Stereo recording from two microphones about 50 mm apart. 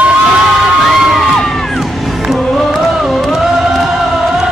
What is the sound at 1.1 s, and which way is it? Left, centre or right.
Music, centre.